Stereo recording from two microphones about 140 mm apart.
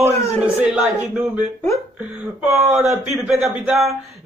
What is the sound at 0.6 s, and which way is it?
Speech, 5° right (ahead or behind).